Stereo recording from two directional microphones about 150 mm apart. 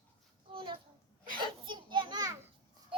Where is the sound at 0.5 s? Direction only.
35° right (ahead or behind).